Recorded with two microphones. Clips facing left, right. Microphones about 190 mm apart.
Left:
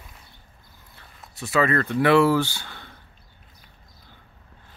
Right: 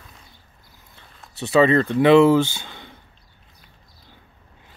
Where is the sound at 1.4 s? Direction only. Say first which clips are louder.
Right 6 dB; 25° right (ahead or behind).